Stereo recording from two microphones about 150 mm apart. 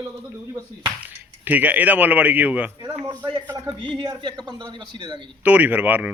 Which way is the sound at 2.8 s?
30° right (ahead or behind).